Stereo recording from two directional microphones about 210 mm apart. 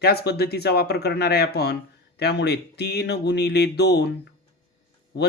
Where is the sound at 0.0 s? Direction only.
50° left (ahead or behind).